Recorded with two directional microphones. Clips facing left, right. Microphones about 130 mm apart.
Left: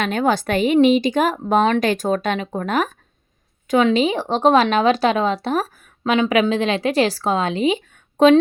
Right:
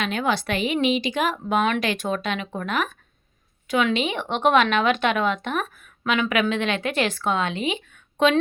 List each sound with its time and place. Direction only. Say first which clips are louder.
0.0 s a woman's voice: left 5 dB; 45° left (ahead or behind)